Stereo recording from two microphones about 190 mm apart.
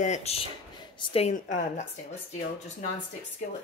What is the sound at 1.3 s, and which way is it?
Speech, 40° left (ahead or behind).